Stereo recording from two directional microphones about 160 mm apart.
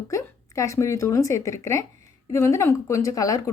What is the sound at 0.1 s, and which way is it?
A woman's voice, 20° left (ahead or behind).